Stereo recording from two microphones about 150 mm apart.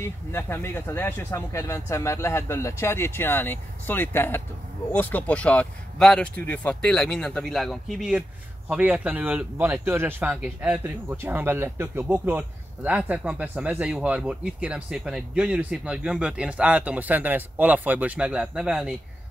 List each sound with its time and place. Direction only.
0.3 s a man's voice: 15° left (ahead or behind); by 18.9 s 5° right (ahead or behind)